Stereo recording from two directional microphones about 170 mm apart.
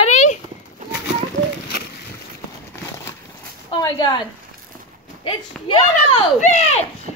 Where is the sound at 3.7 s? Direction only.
25° left (ahead or behind).